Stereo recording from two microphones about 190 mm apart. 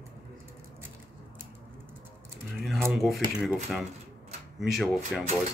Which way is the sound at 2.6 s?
Centre (ahead or behind).